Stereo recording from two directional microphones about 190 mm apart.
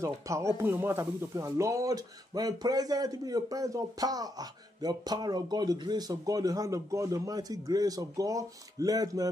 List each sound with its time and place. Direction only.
0.0 s speech: 15° right (ahead or behind)